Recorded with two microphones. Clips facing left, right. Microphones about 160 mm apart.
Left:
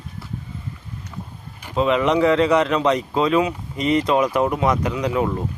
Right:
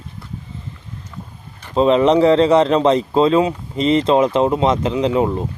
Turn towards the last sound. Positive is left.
turn(degrees=-25)  # may be behind; listen again after turning